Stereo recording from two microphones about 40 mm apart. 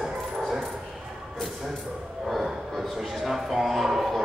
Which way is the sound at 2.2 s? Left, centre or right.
Centre.